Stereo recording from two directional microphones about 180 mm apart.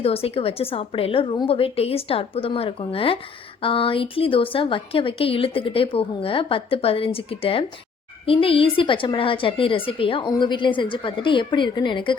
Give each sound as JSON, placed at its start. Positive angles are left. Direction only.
{"t": 0.0, "sound": "a woman's voice", "side_deg": 30}